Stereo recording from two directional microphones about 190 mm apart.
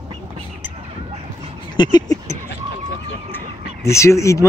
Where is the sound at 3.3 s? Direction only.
15° left (ahead or behind).